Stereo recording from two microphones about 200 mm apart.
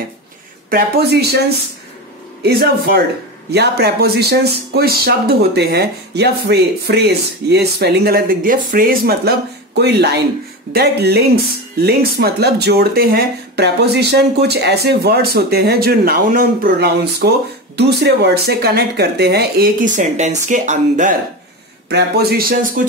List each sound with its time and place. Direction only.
0.7 s speech: 50° right (ahead or behind)
2.4 s speech: 50° right (ahead or behind)
20.0 s speech: 35° right (ahead or behind)
21.8 s speech: 50° right (ahead or behind)